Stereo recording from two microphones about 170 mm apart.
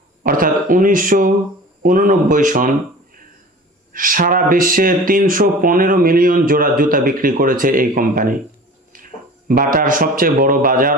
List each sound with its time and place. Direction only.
0.2 s speech: 55° right (ahead or behind)
3.9 s speech: 55° right (ahead or behind)
9.5 s speech: 55° right (ahead or behind)